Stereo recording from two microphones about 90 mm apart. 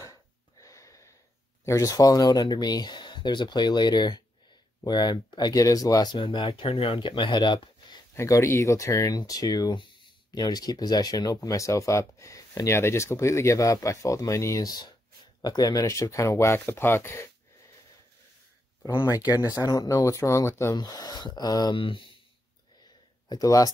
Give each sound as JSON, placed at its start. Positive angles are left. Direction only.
{"t": 0.6, "sound": "wheeze", "side_deg": 35}
{"t": 1.6, "sound": "speech", "side_deg": 35}
{"t": 5.5, "sound": "speech", "side_deg": 40}
{"t": 8.1, "sound": "speech", "side_deg": 30}
{"t": 19.6, "sound": "speech", "side_deg": 40}
{"t": 20.7, "sound": "speech", "side_deg": 50}
{"t": 21.7, "sound": "speech", "side_deg": 75}
{"t": 23.2, "sound": "speech", "side_deg": 45}